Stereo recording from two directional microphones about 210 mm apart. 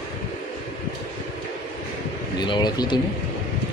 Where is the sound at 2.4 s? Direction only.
20° left (ahead or behind).